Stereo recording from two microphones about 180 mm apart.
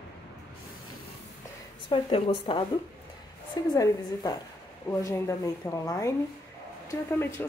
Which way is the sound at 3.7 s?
20° left (ahead or behind).